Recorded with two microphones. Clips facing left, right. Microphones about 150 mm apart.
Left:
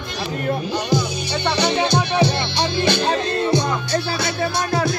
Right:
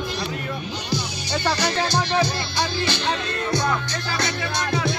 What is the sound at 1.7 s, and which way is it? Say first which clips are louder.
Music: left 3 dB; 25° left (ahead or behind).